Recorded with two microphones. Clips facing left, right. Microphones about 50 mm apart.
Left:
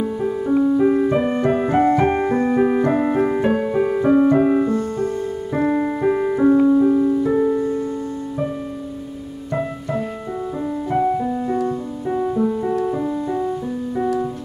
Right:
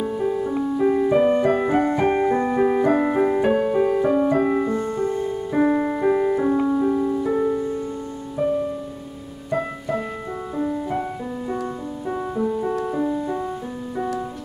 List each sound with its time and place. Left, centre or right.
0.0 s music: centre
4.6 s music: centre
5.5 s music: centre
10.6 s music: centre